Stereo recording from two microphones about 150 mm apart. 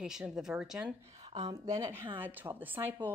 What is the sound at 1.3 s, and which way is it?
Speech, 25° right (ahead or behind).